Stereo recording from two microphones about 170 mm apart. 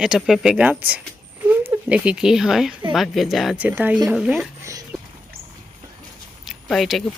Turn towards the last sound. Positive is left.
turn(degrees=0)  # may be behind; listen again after turning